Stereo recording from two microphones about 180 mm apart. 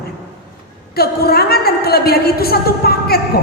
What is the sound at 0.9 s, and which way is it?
A woman's voice, 60° left (ahead or behind).